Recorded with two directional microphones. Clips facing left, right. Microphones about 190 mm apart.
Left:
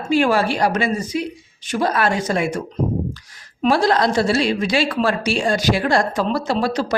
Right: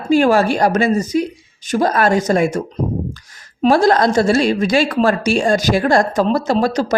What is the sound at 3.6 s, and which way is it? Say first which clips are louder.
Speech: right 4 dB; 45° right (ahead or behind).